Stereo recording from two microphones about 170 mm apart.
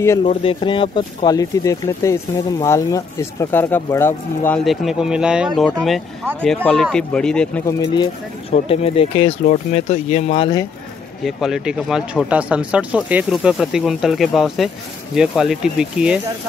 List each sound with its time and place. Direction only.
0.2 s speech: 35° left (ahead or behind); by 4.6 s 15° left (ahead or behind)
4.6 s speech: 5° right (ahead or behind)
7.6 s speech: 25° left (ahead or behind)
11.2 s speech: centre (ahead or behind)